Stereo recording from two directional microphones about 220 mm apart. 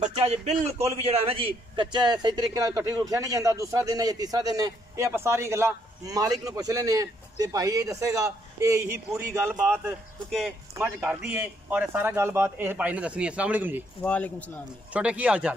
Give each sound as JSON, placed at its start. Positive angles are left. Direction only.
{"t": 0.0, "sound": "a man's voice", "side_deg": -30}
{"t": 14.0, "sound": "speech", "side_deg": 5}
{"t": 14.9, "sound": "speech", "side_deg": -5}